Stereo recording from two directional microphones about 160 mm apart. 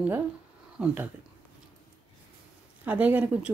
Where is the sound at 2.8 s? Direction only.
10° right (ahead or behind).